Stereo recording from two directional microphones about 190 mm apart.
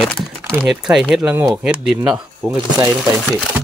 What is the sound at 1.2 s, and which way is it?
Speech, 15° right (ahead or behind).